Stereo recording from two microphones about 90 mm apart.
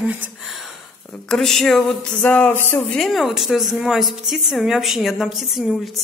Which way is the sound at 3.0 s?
Centre (ahead or behind).